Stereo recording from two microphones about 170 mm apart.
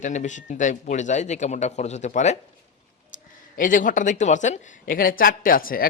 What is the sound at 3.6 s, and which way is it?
Speech, 50° left (ahead or behind).